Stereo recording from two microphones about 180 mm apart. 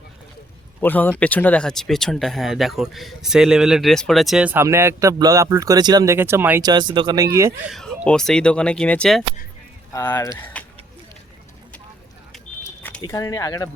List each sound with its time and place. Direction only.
0.8 s speech: 10° left (ahead or behind); by 6.6 s 10° right (ahead or behind)
6.6 s speech: 25° right (ahead or behind)
7.3 s speech: 15° right (ahead or behind)
7.7 s speech: centre (ahead or behind)
9.9 s speech: 15° left (ahead or behind)
10.5 s a sound: 5° left (ahead or behind)
13.0 s speech: 20° left (ahead or behind)